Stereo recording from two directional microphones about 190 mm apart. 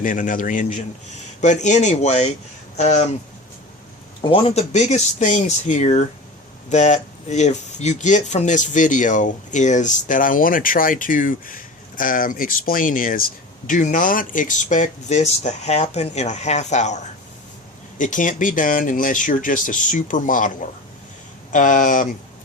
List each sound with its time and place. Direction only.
0.0 s speech: 45° left (ahead or behind)
4.2 s speech: 30° left (ahead or behind); by 22.0 s 45° left (ahead or behind)